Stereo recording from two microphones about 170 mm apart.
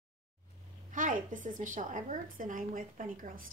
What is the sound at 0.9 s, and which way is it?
A woman's voice, 50° right (ahead or behind).